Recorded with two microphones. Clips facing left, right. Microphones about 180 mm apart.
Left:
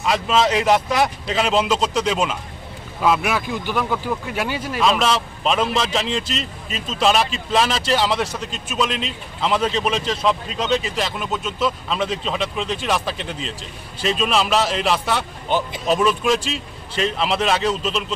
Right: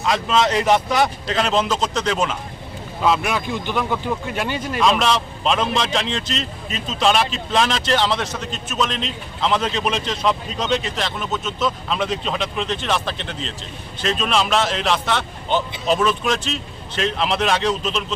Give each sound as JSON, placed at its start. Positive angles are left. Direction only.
{"t": 0.0, "sound": "speech", "side_deg": 5}